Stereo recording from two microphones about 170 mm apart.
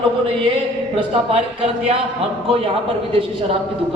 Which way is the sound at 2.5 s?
35° right (ahead or behind).